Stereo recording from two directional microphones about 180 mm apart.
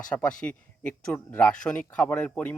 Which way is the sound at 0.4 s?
5° left (ahead or behind).